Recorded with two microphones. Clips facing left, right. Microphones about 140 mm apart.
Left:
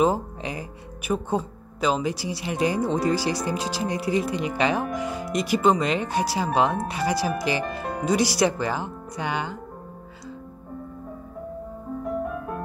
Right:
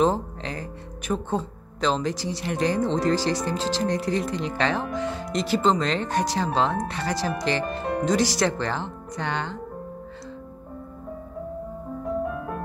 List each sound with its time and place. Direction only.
0.0 s speech: 10° left (ahead or behind)